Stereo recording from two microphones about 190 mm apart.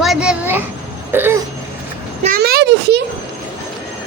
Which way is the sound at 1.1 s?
10° right (ahead or behind).